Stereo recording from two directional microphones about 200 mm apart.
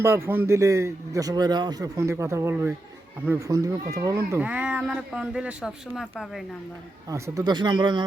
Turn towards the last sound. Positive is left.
turn(degrees=-20)  # may be behind; listen again after turning